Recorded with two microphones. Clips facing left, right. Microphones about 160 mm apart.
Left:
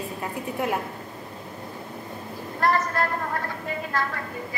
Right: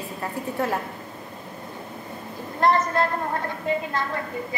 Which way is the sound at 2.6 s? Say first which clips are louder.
Right 3 dB; 25° right (ahead or behind).